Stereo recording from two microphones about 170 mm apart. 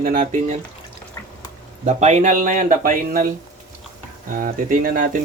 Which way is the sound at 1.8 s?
40° right (ahead or behind).